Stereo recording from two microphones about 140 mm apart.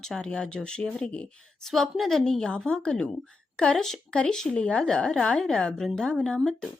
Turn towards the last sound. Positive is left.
turn(degrees=5)  # may be behind; listen again after turning